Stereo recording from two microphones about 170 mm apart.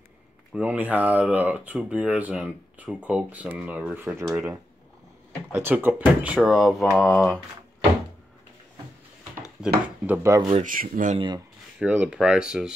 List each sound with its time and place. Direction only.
0.5 s speech: 10° right (ahead or behind)
10.0 s speech: 15° right (ahead or behind)
10.6 s speech: 55° right (ahead or behind)
11.1 s speech: 25° right (ahead or behind)
11.8 s speech: 10° right (ahead or behind)